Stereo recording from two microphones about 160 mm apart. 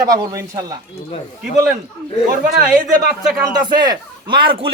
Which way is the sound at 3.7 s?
25° right (ahead or behind).